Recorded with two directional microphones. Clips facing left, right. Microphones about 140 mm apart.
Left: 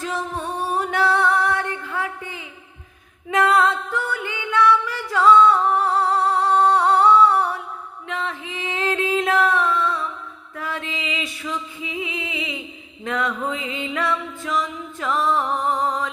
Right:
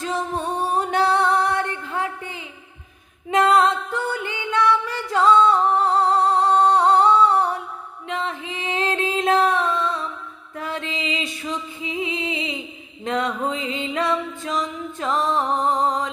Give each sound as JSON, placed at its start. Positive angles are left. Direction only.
{"t": 0.0, "sound": "music", "side_deg": -20}
{"t": 8.0, "sound": "female singing", "side_deg": -20}
{"t": 10.5, "sound": "music", "side_deg": -25}